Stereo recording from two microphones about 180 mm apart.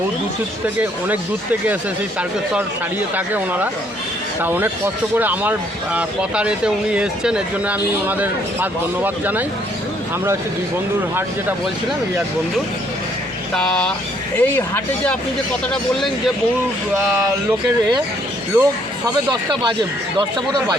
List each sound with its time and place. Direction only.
0.8 s speech: 10° right (ahead or behind)
3.2 s speech: 10° right (ahead or behind)
13.6 s speech: 5° left (ahead or behind)
18.5 s speech: 20° right (ahead or behind)